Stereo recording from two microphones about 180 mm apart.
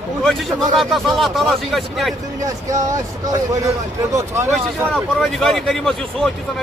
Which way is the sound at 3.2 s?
20° right (ahead or behind).